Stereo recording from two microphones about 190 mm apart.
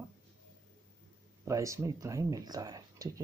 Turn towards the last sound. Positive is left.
turn(degrees=-20)  # may be behind; listen again after turning